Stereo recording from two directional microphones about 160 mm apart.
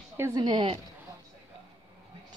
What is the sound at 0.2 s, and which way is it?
Speech, 25° right (ahead or behind).